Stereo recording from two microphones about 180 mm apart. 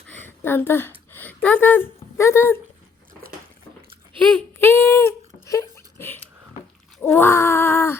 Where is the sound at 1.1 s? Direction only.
10° left (ahead or behind).